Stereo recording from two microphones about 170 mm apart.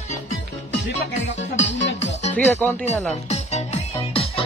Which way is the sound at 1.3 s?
40° left (ahead or behind).